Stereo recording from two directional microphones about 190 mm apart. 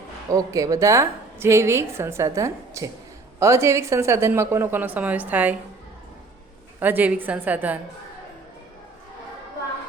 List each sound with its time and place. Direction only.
0.3 s a woman's voice: 20° right (ahead or behind)
6.7 s a woman's voice: 10° right (ahead or behind)